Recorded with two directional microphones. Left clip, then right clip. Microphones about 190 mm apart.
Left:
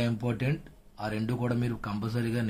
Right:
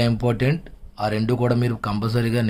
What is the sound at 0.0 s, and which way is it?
Speech, 40° right (ahead or behind).